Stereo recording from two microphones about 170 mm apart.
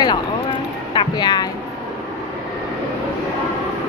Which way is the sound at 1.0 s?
25° left (ahead or behind).